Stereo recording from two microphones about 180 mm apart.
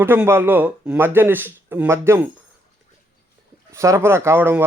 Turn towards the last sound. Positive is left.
turn(degrees=-10)  # may be behind; listen again after turning